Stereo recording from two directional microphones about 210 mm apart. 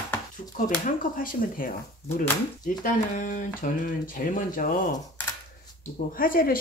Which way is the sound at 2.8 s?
40° left (ahead or behind).